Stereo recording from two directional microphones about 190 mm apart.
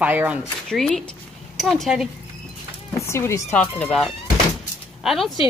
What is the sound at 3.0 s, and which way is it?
A woman's voice, 15° left (ahead or behind).